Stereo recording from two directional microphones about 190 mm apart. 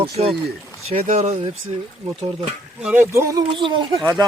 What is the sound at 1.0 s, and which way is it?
Speech, 35° right (ahead or behind).